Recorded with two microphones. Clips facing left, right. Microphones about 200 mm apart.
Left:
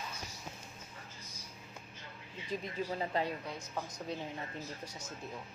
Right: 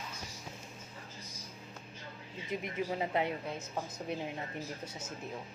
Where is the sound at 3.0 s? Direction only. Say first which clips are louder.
Right 2 dB; 20° right (ahead or behind).